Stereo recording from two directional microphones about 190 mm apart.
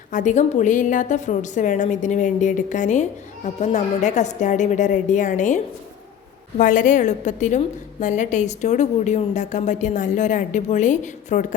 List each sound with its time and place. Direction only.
0.1 s a woman's voice: 40° left (ahead or behind)
6.6 s a woman's voice: 45° left (ahead or behind)